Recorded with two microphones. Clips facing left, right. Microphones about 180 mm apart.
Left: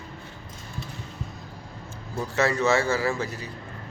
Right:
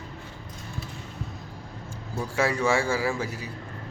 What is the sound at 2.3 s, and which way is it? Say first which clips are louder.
A man's voice: left 2 dB; 10° right (ahead or behind).